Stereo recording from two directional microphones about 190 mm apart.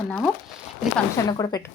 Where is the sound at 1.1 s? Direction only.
20° left (ahead or behind).